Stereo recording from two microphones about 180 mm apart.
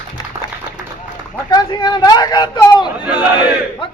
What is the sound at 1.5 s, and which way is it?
A man's voice, 25° left (ahead or behind).